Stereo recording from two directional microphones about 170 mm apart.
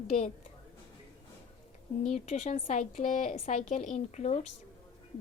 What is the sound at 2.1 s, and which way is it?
A woman's voice, 45° left (ahead or behind).